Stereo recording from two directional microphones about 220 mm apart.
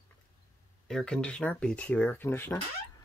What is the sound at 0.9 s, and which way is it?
Speech, 5° left (ahead or behind).